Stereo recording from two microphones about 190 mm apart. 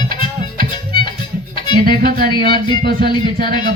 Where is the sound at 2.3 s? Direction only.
25° left (ahead or behind).